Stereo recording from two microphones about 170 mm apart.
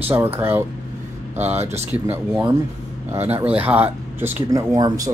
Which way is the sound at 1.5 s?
40° right (ahead or behind).